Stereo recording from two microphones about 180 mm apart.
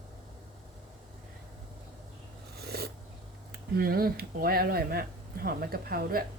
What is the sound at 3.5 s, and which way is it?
Speech, 60° right (ahead or behind).